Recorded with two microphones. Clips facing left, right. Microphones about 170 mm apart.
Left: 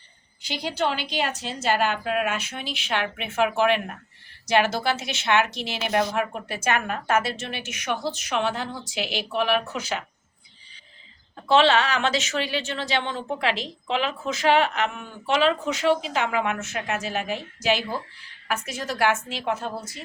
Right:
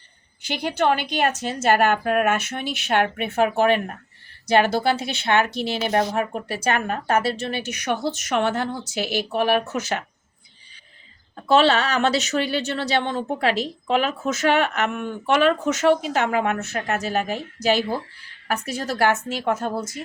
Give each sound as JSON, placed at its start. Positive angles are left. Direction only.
{"t": 0.4, "sound": "a woman's voice", "side_deg": -55}
{"t": 11.5, "sound": "a woman's voice", "side_deg": -40}